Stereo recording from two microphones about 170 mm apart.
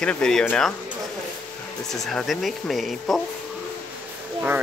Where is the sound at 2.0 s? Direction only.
Centre (ahead or behind).